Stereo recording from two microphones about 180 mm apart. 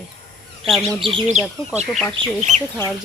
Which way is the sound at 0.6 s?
Centre (ahead or behind).